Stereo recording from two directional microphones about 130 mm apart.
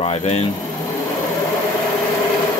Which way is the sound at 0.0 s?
50° left (ahead or behind).